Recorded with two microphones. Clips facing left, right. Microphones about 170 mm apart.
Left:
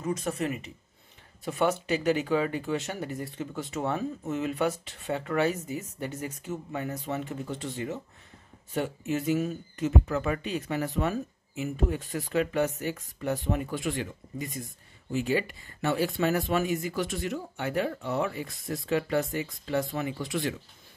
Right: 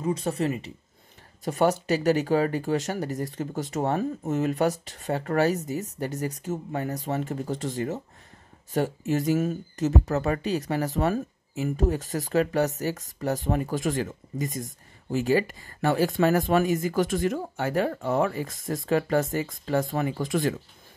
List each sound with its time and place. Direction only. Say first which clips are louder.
0.0 s speech: right 4 dB; 30° right (ahead or behind); by 20.6 s 45° right (ahead or behind)